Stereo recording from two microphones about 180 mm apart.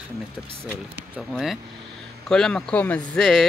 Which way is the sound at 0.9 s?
5° right (ahead or behind).